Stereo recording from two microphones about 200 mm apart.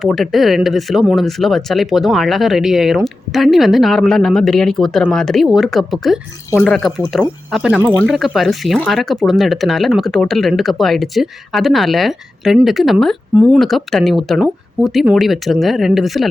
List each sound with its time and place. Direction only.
0.0 s speech: centre (ahead or behind)